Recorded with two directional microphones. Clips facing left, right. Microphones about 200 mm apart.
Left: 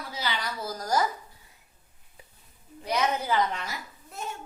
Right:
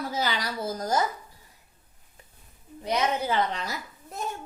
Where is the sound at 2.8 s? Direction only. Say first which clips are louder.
Right 1 dB; 25° right (ahead or behind).